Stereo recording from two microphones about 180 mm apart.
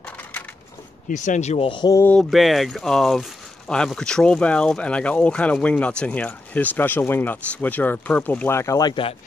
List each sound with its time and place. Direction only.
1.0 s speech: 45° left (ahead or behind); by 2.0 s 25° left (ahead or behind)
2.0 s speech: 10° left (ahead or behind); by 9.1 s 25° left (ahead or behind)